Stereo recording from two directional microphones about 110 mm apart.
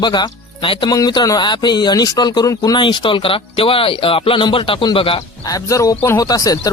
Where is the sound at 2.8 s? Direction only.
50° left (ahead or behind).